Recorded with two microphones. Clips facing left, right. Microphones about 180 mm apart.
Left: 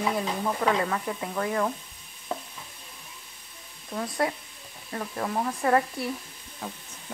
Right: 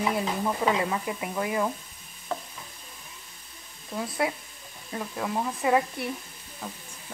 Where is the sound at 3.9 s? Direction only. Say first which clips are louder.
Left 1 dB; 10° right (ahead or behind).